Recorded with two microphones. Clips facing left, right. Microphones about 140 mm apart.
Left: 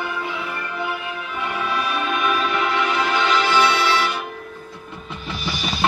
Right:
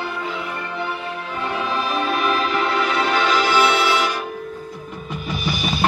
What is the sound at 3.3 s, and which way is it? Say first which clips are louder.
Music: even; 10° right (ahead or behind).